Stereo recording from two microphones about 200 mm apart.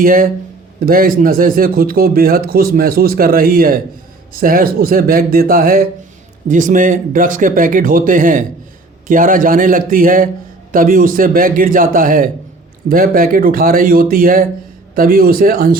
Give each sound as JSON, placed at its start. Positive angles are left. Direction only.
{"t": 0.0, "sound": "speech", "side_deg": -45}